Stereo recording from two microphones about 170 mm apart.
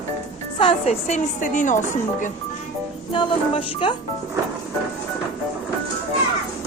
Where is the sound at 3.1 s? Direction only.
30° left (ahead or behind).